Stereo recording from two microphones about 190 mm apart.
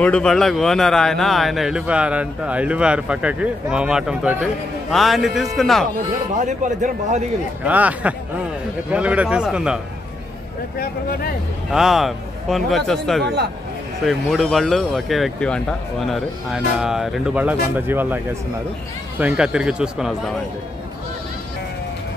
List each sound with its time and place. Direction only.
0.0 s speech: 5° left (ahead or behind)
6.3 s a man's voice: 40° right (ahead or behind)
7.6 s speech: 10° right (ahead or behind)
10.8 s speech: 50° left (ahead or behind)
11.7 s speech: centre (ahead or behind)
13.2 s speech: 60° right (ahead or behind)
14.0 s speech: centre (ahead or behind)